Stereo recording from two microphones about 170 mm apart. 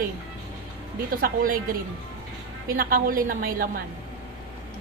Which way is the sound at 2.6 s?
55° right (ahead or behind).